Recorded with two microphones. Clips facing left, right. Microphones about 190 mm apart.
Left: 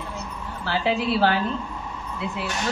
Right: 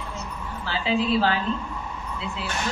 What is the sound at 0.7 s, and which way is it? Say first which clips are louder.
A man's voice: left 1 dB; 60° left (ahead or behind).